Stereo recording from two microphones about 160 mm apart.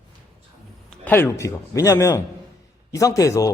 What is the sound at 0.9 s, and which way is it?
A man's voice, 10° left (ahead or behind).